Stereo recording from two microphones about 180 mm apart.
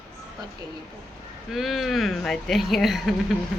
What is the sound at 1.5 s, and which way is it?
Speech, centre (ahead or behind).